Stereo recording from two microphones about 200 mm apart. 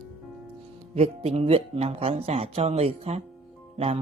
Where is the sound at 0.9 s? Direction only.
30° right (ahead or behind).